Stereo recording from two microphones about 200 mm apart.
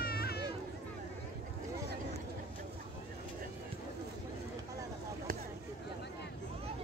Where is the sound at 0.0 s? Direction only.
50° left (ahead or behind).